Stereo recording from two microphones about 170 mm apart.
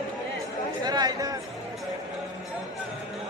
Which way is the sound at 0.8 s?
25° right (ahead or behind).